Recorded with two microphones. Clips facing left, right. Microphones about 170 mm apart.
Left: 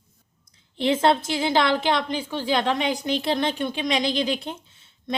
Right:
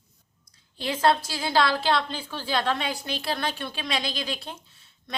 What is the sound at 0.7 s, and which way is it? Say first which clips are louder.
A woman's voice: left 3 dB; 25° left (ahead or behind).